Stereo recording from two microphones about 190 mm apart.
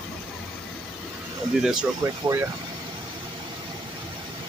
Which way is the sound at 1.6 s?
5° right (ahead or behind).